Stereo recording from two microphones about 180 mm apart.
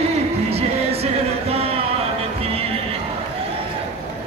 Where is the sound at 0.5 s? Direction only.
35° right (ahead or behind).